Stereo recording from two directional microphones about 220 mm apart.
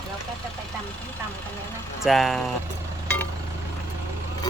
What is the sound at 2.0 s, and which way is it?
Speech, centre (ahead or behind).